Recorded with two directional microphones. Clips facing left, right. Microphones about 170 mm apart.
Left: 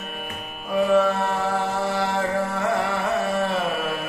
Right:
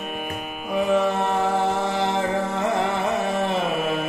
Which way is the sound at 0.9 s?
20° right (ahead or behind).